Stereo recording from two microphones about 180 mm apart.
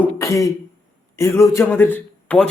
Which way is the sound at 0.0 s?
15° left (ahead or behind).